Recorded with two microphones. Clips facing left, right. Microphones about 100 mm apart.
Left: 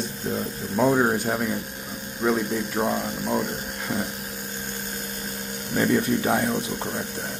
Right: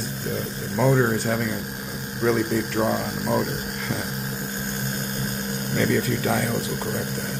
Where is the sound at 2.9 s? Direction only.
5° right (ahead or behind).